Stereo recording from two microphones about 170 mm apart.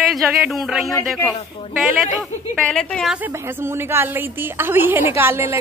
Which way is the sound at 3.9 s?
15° right (ahead or behind).